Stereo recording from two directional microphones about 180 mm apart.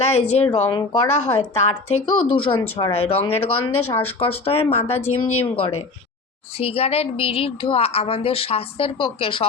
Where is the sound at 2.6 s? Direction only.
25° left (ahead or behind).